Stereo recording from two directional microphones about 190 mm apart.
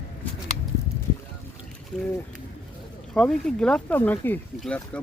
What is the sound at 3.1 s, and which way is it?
Speech, 5° left (ahead or behind).